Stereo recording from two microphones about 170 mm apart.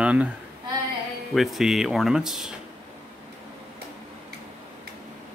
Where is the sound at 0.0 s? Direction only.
10° right (ahead or behind).